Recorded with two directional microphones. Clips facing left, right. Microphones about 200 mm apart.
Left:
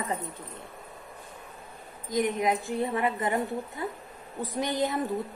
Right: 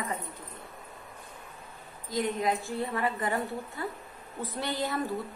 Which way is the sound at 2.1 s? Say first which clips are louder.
Left 3 dB; 20° left (ahead or behind).